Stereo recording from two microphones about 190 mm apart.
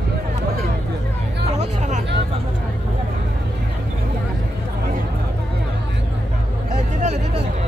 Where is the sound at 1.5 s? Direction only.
40° right (ahead or behind).